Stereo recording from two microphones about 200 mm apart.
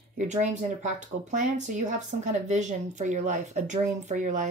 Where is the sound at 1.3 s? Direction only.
40° right (ahead or behind).